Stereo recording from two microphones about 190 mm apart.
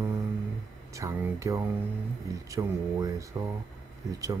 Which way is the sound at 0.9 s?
15° right (ahead or behind).